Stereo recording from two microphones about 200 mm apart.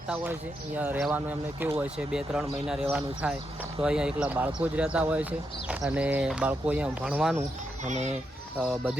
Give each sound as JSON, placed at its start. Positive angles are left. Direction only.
{"t": 0.8, "sound": "speech", "side_deg": -5}
{"t": 7.9, "sound": "a child's voice", "side_deg": -35}
{"t": 8.5, "sound": "speech", "side_deg": -5}